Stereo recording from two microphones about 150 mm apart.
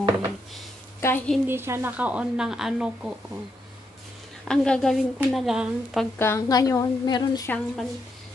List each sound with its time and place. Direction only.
1.0 s a woman's voice: 10° left (ahead or behind)
1.4 s speech: 15° right (ahead or behind)
4.5 s a woman's voice: 5° left (ahead or behind)
6.1 s a woman's voice: 20° left (ahead or behind)
7.4 s speech: 10° left (ahead or behind)